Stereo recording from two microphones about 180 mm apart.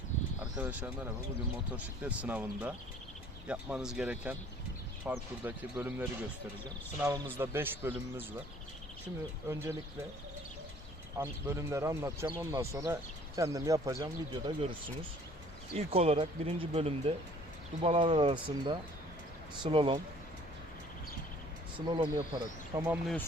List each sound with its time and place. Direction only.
0.6 s speech: 10° right (ahead or behind)
11.2 s speech: 15° right (ahead or behind)
21.8 s speech: 25° right (ahead or behind)
22.8 s speech: 5° right (ahead or behind)